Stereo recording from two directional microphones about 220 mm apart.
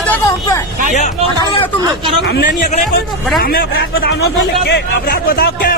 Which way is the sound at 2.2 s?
45° left (ahead or behind).